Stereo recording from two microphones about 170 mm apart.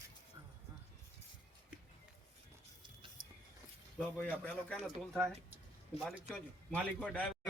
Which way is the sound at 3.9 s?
5° left (ahead or behind).